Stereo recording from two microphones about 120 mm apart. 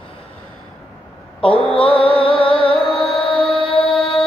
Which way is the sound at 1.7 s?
45° left (ahead or behind).